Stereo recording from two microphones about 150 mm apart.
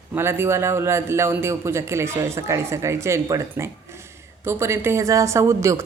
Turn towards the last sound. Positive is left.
turn(degrees=-20)  # may be behind; listen again after turning